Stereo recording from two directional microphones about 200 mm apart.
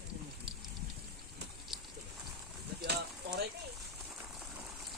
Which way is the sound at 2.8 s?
55° right (ahead or behind).